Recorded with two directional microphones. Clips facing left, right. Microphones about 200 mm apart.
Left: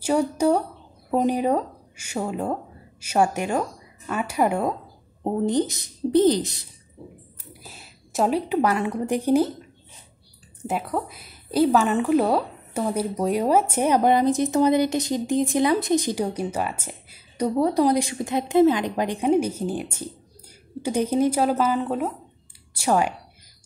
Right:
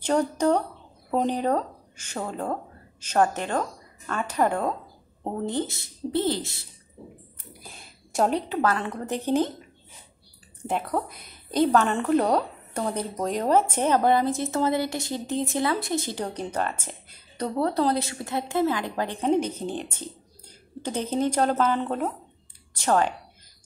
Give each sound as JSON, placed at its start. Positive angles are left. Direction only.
{"t": 0.0, "sound": "a woman's voice", "side_deg": 10}
{"t": 7.6, "sound": "a woman's voice", "side_deg": 5}
{"t": 10.6, "sound": "a woman's voice", "side_deg": 0}